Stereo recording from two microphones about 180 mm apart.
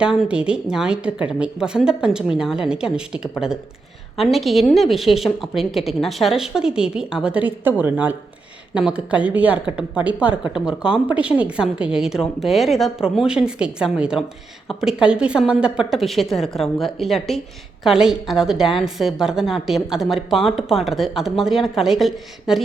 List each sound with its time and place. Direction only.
0.0 s speech: 5° right (ahead or behind)